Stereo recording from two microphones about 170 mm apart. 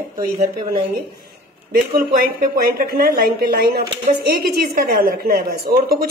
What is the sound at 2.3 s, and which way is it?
Speech, 60° right (ahead or behind).